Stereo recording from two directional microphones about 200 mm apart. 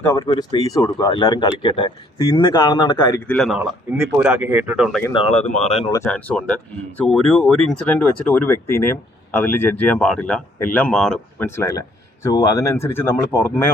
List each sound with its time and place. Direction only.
0.0 s speech: 15° left (ahead or behind)
3.2 s a man's voice: centre (ahead or behind)